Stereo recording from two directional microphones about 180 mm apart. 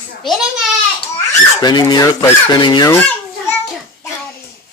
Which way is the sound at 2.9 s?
10° left (ahead or behind).